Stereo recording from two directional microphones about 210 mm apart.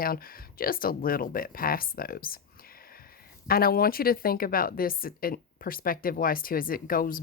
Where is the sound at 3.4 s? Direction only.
45° left (ahead or behind).